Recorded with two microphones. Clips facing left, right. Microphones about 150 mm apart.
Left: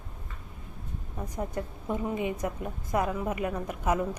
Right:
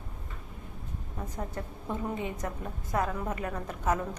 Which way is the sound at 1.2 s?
15° left (ahead or behind).